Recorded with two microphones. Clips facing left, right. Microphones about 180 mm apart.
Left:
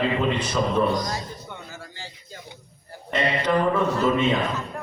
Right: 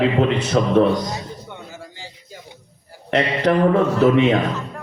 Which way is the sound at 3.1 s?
75° right (ahead or behind).